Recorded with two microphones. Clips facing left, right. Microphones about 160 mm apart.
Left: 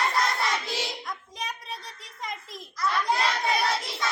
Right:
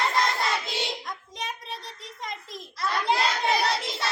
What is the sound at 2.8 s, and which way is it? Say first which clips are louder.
Speech: even; 25° right (ahead or behind).